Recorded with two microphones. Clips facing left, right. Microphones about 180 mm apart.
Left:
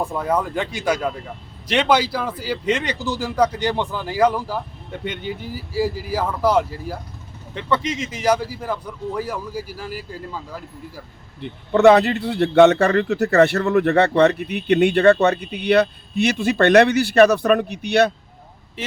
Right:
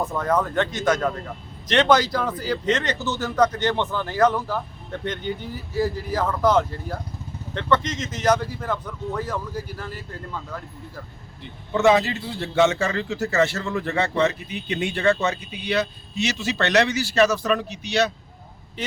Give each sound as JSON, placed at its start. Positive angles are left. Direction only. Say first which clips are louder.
{"t": 0.0, "sound": "speech", "louder": "left 1 dB", "side_deg": 10}
{"t": 11.3, "sound": "a man's voice", "louder": "left 7 dB", "side_deg": 60}